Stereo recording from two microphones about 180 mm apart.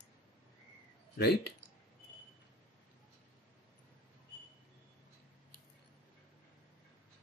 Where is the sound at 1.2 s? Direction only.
65° left (ahead or behind).